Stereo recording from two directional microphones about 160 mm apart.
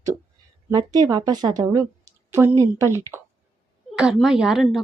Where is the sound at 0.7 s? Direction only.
25° right (ahead or behind).